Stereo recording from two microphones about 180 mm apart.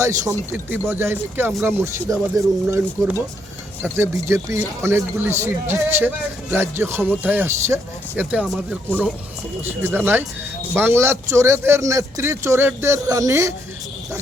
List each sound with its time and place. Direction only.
0.0 s speech: 15° right (ahead or behind)